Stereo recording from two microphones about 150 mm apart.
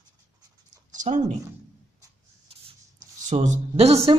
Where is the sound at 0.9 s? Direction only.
55° right (ahead or behind).